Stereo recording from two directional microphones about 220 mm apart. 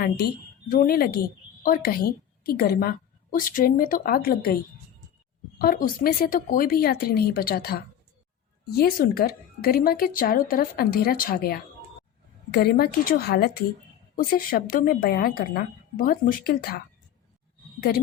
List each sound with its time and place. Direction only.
0.7 s a woman's voice: 40° left (ahead or behind)
5.5 s speech: 40° left (ahead or behind)
17.9 s speech: 40° left (ahead or behind)